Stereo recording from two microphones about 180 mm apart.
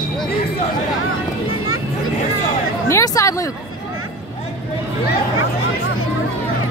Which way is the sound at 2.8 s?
15° left (ahead or behind).